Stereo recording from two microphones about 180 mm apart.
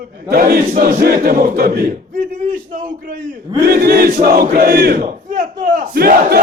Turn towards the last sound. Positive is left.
turn(degrees=-60)  # may be behind; listen again after turning